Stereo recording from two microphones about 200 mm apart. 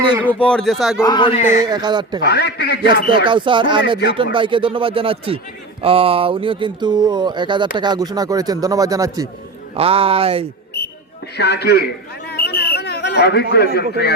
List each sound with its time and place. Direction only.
0.3 s speech: 5° left (ahead or behind)
1.0 s speech: 25° left (ahead or behind)
1.5 s speech: 20° right (ahead or behind)
2.2 s a man's voice: 55° left (ahead or behind)
3.2 s a man's voice: 25° right (ahead or behind)
9.7 s speech: 30° right (ahead or behind)
11.3 s a man's voice: 55° left (ahead or behind)
12.3 s a sound: 50° left (ahead or behind)